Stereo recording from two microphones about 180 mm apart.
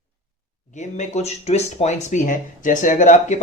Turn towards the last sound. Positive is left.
turn(degrees=40)  # may be behind; listen again after turning